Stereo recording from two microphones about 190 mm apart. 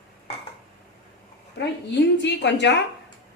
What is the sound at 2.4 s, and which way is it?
Speech, 65° left (ahead or behind).